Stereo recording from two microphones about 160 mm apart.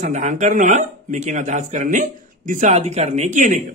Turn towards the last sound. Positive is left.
turn(degrees=-50)  # may be behind; listen again after turning